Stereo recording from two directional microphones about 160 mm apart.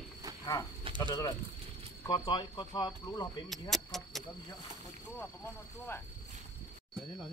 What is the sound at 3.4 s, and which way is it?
Speech, centre (ahead or behind).